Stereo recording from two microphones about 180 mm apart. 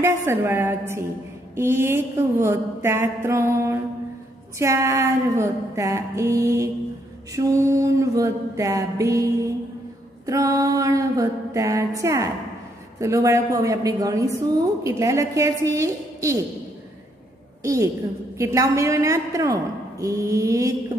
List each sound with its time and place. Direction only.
0.0 s a woman's voice: 15° right (ahead or behind)
18.4 s a woman's voice: 20° right (ahead or behind)